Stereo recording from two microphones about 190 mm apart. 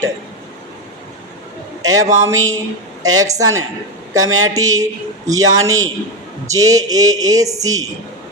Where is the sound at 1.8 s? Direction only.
20° right (ahead or behind).